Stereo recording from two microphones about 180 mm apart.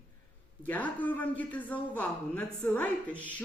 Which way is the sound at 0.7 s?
10° left (ahead or behind).